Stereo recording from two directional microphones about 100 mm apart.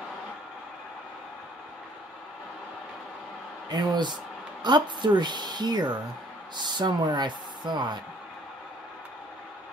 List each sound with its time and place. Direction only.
3.6 s speech: 45° right (ahead or behind)